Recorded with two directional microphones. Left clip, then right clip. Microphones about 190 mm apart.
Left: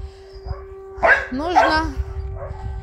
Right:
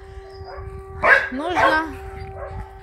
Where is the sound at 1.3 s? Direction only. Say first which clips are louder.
Left 2 dB; 10° left (ahead or behind).